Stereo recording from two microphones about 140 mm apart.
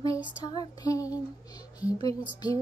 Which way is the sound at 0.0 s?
25° left (ahead or behind).